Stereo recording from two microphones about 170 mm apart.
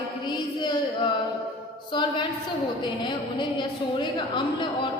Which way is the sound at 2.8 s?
25° left (ahead or behind).